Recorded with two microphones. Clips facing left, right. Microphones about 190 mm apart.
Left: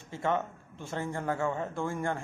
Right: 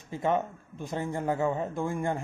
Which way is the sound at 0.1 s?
15° right (ahead or behind).